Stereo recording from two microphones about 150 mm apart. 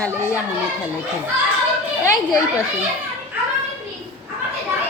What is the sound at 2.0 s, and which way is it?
Speech, 20° left (ahead or behind).